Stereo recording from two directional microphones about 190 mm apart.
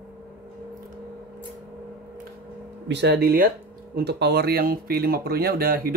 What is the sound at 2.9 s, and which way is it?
Speech, 60° right (ahead or behind).